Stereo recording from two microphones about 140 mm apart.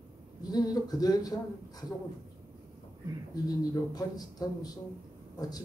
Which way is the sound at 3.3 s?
25° left (ahead or behind).